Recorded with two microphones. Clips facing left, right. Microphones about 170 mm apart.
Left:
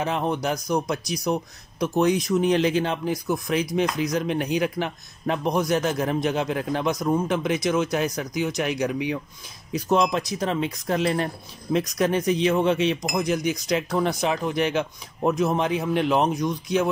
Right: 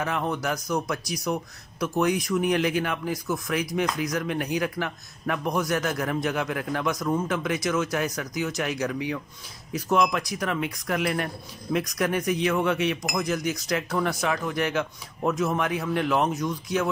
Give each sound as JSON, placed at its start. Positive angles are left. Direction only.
{"t": 0.0, "sound": "a man's voice", "side_deg": 20}